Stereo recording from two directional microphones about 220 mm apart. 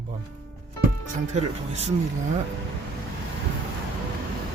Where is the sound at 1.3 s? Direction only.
30° right (ahead or behind).